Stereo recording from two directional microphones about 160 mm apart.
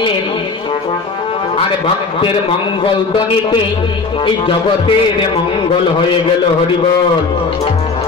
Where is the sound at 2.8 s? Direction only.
30° left (ahead or behind).